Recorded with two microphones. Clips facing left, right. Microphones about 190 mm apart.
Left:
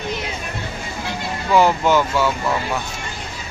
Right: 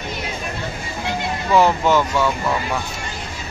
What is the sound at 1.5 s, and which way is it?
Speech, centre (ahead or behind).